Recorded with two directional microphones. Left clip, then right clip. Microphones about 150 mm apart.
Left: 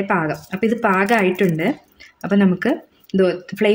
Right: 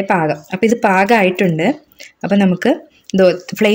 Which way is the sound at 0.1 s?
20° right (ahead or behind).